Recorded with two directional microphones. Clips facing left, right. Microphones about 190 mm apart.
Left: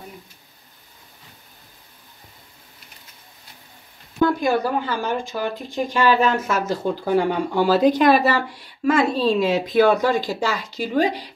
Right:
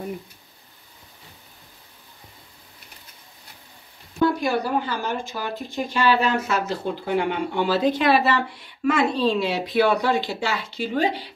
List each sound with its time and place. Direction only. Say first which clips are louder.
4.2 s speech: left 2 dB; 50° left (ahead or behind)
7.1 s speech: left 4 dB; 35° left (ahead or behind)